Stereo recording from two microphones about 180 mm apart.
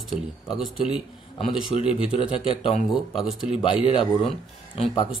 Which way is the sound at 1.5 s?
30° left (ahead or behind).